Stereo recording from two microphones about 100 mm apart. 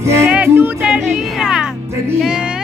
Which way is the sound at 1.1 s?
5° right (ahead or behind).